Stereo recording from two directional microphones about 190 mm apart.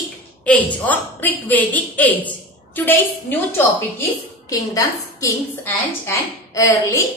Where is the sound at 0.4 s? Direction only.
10° left (ahead or behind).